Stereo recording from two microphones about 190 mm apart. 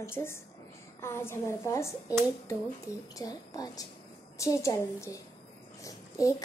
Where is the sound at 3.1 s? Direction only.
20° left (ahead or behind).